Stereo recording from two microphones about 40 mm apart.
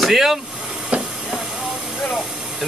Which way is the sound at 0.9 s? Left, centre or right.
Right.